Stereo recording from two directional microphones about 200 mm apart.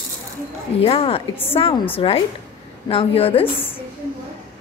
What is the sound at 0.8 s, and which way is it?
A woman's voice, 30° left (ahead or behind).